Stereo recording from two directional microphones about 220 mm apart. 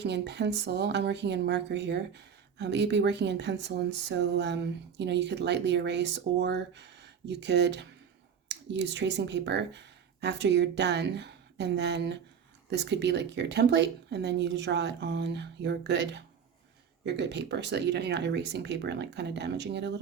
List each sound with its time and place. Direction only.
0.0 s speech: 50° right (ahead or behind)